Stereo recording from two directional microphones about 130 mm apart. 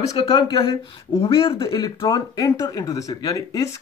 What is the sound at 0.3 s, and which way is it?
Speech, 40° left (ahead or behind).